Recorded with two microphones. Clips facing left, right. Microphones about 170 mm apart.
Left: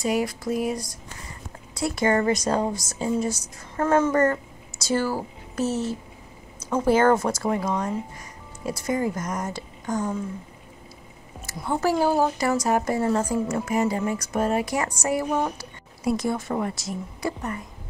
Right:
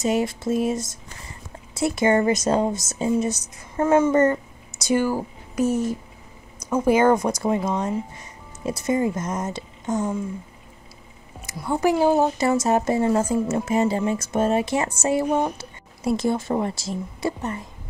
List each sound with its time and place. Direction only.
0.0 s speech: 25° right (ahead or behind)
3.8 s speech: 10° right (ahead or behind)
4.1 s speech: 20° right (ahead or behind)
11.5 s speech: centre (ahead or behind)
11.8 s speech: 15° right (ahead or behind)